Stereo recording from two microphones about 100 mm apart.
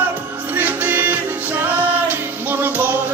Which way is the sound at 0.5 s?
20° right (ahead or behind).